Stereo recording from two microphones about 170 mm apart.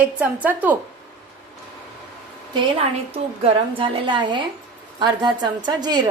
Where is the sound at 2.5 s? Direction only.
30° right (ahead or behind).